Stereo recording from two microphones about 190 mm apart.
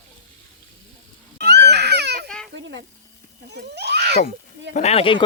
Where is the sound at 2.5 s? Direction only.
75° right (ahead or behind).